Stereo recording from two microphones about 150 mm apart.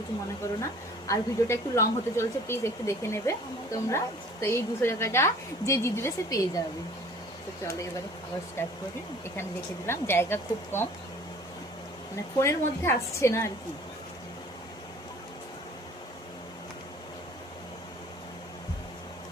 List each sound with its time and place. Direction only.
1.0 s speech: 20° left (ahead or behind)
8.6 s speech: 15° left (ahead or behind)
12.4 s speech: 15° left (ahead or behind)